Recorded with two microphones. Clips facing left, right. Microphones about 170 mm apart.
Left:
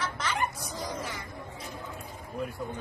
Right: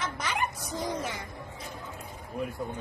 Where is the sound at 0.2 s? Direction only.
15° right (ahead or behind).